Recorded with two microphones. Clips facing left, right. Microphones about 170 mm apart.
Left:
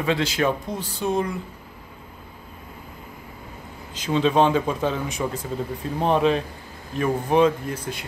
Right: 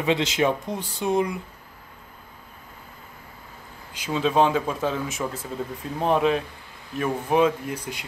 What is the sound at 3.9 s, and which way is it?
Speech, 5° right (ahead or behind).